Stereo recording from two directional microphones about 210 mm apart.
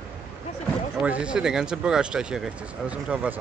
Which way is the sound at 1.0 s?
5° right (ahead or behind).